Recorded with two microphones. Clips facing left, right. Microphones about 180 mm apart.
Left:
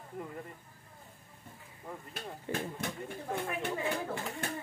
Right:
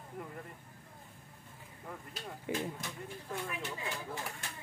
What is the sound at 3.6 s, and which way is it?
Chatter, 55° left (ahead or behind).